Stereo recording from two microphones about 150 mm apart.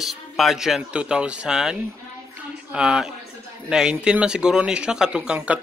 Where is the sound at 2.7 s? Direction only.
5° right (ahead or behind).